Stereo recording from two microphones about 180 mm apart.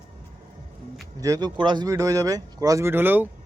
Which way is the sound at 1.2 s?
20° right (ahead or behind).